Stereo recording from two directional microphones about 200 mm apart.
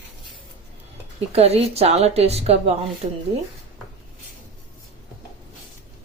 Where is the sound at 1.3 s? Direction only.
30° right (ahead or behind).